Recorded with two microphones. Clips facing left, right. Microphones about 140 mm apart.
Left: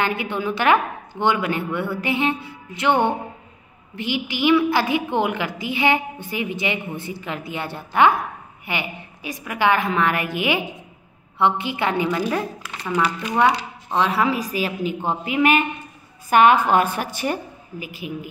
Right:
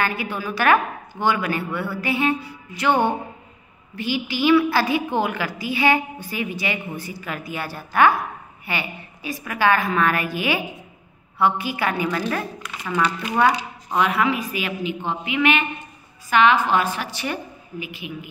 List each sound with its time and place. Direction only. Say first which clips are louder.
0.0 s a woman's voice: left 2 dB; 20° left (ahead or behind)
13.9 s a woman's voice: even; 35° left (ahead or behind)